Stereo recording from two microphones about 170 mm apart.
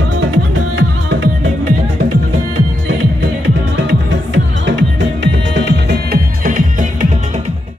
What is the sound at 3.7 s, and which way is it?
Music, 90° right.